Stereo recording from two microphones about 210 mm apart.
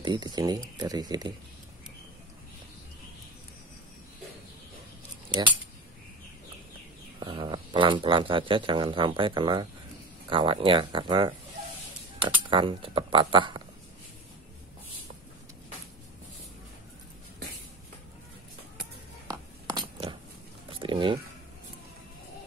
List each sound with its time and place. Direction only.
0.0 s speech: 20° right (ahead or behind)
7.2 s speech: 20° right (ahead or behind)
19.2 s music: 15° right (ahead or behind)
20.7 s a sound: 25° right (ahead or behind)